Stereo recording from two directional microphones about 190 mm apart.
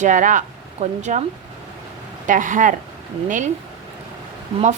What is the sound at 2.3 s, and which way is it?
Speech, 45° right (ahead or behind).